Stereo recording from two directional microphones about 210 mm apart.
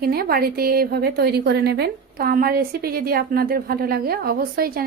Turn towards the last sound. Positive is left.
turn(degrees=-45)  # may be behind; listen again after turning